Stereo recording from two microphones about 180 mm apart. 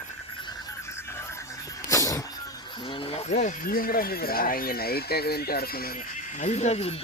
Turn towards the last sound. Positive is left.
turn(degrees=35)  # may be behind; listen again after turning